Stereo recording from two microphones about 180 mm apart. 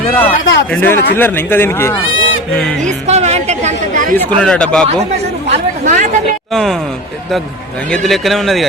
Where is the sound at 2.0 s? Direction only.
90° left.